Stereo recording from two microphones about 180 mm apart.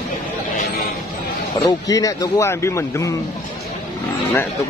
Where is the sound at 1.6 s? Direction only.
20° left (ahead or behind).